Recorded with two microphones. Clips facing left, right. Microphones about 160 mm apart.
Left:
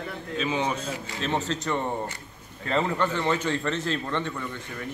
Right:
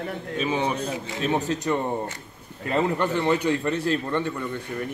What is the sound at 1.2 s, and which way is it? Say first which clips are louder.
A man's voice: right 3 dB; 15° right (ahead or behind).